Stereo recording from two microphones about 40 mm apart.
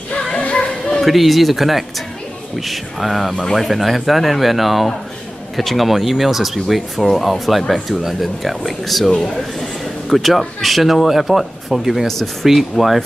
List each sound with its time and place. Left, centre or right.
0.4 s children playing: left
1.0 s a man's voice: centre